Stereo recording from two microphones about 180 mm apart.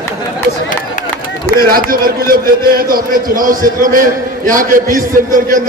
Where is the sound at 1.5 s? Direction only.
55° right (ahead or behind).